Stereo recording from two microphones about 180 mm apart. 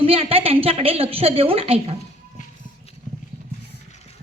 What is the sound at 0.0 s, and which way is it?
A child's voice, 30° right (ahead or behind).